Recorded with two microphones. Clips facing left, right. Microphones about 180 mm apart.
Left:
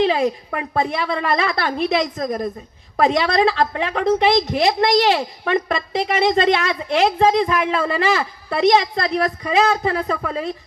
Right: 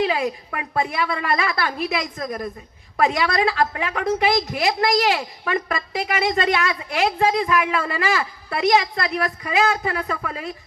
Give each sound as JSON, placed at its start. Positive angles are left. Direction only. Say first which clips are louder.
{"t": 0.0, "sound": "a woman's voice", "louder": "left 4 dB", "side_deg": 30}